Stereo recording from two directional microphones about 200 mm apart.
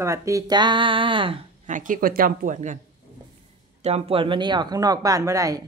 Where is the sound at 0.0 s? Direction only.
15° right (ahead or behind).